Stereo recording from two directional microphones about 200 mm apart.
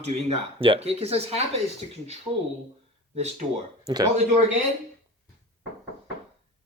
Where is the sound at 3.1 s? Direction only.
35° right (ahead or behind).